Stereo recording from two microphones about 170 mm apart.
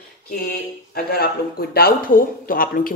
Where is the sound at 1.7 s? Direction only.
60° left (ahead or behind).